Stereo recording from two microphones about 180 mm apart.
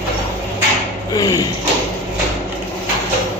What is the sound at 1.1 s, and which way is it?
Speech, 20° left (ahead or behind).